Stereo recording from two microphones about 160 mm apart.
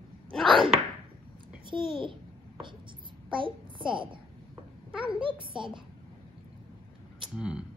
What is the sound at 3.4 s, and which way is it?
Speech, 30° right (ahead or behind).